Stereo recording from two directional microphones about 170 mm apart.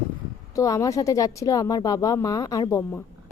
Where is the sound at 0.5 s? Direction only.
20° left (ahead or behind).